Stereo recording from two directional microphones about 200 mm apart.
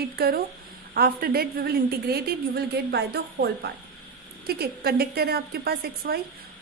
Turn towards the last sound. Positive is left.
turn(degrees=-50)  # may be behind; listen again after turning